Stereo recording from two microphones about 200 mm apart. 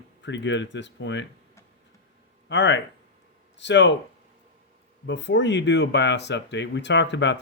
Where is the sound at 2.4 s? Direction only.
65° left (ahead or behind).